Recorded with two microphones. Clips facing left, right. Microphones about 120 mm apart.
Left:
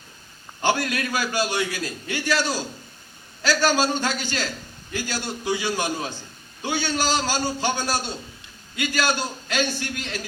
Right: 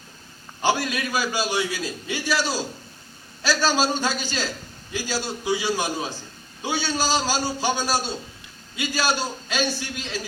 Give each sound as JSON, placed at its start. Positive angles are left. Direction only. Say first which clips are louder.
{"t": 0.6, "sound": "a man's voice", "louder": "even", "side_deg": -15}
{"t": 3.5, "sound": "a man's voice", "louder": "left 1 dB", "side_deg": 15}
{"t": 3.8, "sound": "a man's voice", "louder": "even", "side_deg": -15}